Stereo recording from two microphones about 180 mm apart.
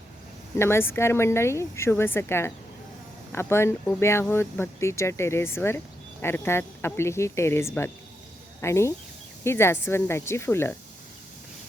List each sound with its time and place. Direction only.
0.6 s speech: 15° left (ahead or behind)